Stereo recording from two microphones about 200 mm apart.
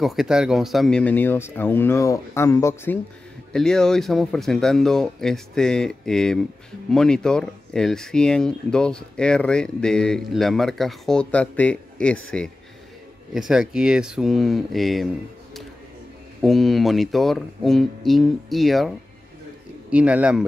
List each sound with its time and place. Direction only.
0.0 s speech: centre (ahead or behind)
13.3 s speech: 5° right (ahead or behind)
16.3 s speech: centre (ahead or behind)